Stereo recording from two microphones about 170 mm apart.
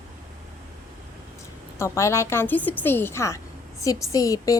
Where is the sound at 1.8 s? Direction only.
15° left (ahead or behind).